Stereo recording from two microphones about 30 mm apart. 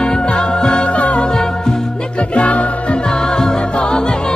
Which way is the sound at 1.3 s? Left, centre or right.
Left.